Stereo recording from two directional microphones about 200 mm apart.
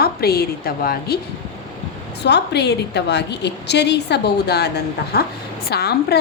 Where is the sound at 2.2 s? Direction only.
55° left (ahead or behind).